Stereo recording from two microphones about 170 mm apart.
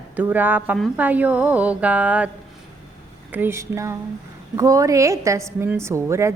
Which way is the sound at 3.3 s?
15° right (ahead or behind).